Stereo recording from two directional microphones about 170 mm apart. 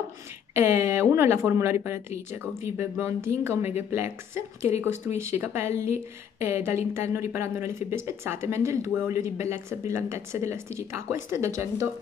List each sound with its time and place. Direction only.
0.6 s speech: 15° right (ahead or behind)